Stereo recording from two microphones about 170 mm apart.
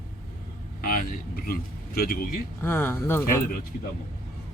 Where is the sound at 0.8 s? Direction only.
55° left (ahead or behind).